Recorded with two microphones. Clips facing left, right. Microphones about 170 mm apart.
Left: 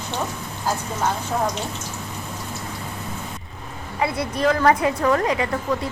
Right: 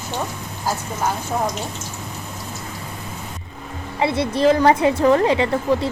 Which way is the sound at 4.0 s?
25° right (ahead or behind).